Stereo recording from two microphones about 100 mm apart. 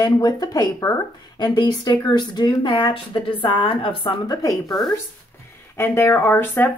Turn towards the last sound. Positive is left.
turn(degrees=20)  # may be behind; listen again after turning